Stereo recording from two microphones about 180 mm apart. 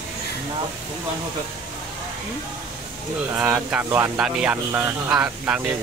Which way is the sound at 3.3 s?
10° right (ahead or behind).